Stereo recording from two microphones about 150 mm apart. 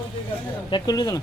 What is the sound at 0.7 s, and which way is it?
Speech, 25° left (ahead or behind).